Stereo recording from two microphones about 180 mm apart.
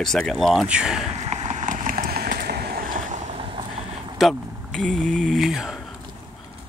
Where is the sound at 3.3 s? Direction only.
30° right (ahead or behind).